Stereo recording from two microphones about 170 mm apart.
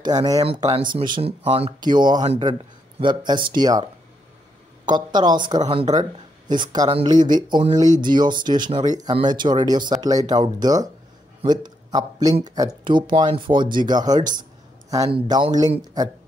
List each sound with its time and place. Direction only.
0.0 s speech: 25° right (ahead or behind)
0.4 s speech: 35° right (ahead or behind)
4.9 s speech: 25° right (ahead or behind)